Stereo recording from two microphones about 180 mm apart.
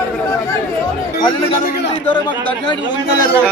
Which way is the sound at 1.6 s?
65° left (ahead or behind).